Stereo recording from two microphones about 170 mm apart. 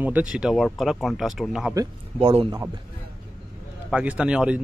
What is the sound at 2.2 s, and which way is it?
Speech, 35° right (ahead or behind).